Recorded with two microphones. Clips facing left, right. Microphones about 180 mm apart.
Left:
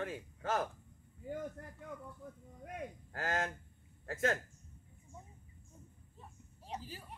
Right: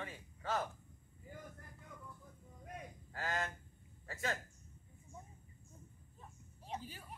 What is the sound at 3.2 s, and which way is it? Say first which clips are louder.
A man's voice: left 4 dB; 50° left (ahead or behind).